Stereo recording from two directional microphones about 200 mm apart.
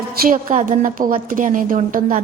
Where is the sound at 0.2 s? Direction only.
40° right (ahead or behind).